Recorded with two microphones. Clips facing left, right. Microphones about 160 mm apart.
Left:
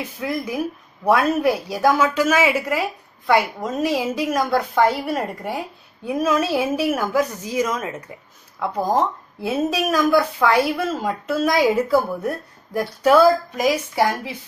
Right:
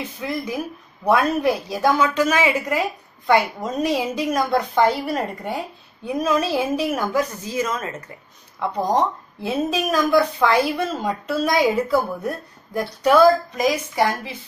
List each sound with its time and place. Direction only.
0.2 s a woman's voice: 5° left (ahead or behind)